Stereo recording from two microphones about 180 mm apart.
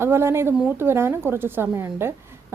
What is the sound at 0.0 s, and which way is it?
A woman's voice, 15° right (ahead or behind).